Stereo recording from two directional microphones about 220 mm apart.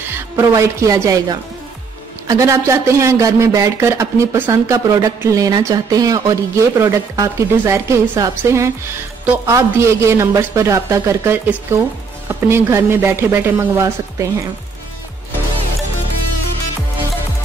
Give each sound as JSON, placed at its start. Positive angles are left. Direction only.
{"t": 0.5, "sound": "a woman's voice", "side_deg": -15}